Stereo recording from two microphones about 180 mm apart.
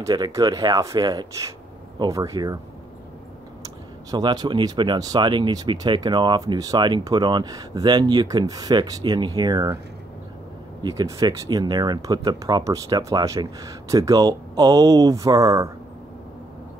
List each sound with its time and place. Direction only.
0.0 s speech: 20° right (ahead or behind)
3.6 s speech: 20° right (ahead or behind)
10.8 s speech: 20° right (ahead or behind)